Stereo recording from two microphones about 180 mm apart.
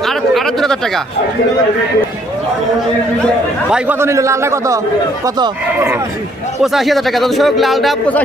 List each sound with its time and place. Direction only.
0.0 s a sound: centre (ahead or behind)
3.7 s speech: 10° right (ahead or behind)
6.6 s a man's voice: centre (ahead or behind)